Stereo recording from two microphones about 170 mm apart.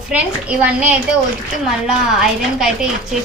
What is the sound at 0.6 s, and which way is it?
A woman's voice, 10° right (ahead or behind).